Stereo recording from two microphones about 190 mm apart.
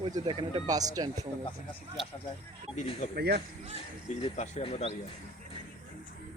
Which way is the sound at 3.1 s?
55° right (ahead or behind).